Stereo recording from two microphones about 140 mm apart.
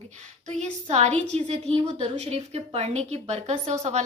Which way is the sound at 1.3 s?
45° right (ahead or behind).